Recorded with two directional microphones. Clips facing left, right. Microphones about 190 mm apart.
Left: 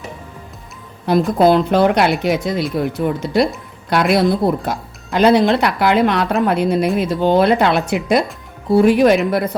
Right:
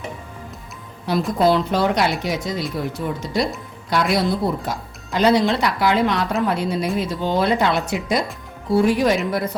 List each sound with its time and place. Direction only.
1.4 s speech: 55° left (ahead or behind)